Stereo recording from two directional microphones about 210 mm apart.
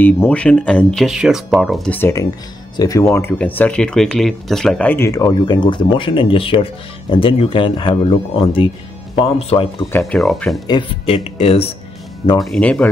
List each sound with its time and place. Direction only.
0.0 s speech: 5° left (ahead or behind)
2.0 s speech: 10° left (ahead or behind)
9.9 s speech: centre (ahead or behind)
10.7 s speech: 25° left (ahead or behind)
12.4 s speech: 5° left (ahead or behind)